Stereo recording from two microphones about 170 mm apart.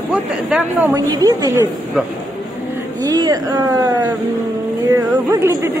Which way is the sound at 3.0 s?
25° right (ahead or behind).